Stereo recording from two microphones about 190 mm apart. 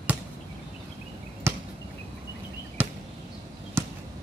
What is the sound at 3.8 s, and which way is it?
Chop, 15° right (ahead or behind).